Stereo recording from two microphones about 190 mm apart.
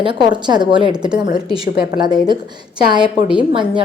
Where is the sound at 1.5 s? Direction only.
20° right (ahead or behind).